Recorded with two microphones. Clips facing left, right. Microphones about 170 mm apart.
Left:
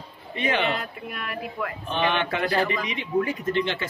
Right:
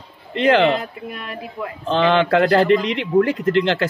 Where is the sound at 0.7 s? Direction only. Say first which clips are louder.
Right 8 dB; 30° right (ahead or behind).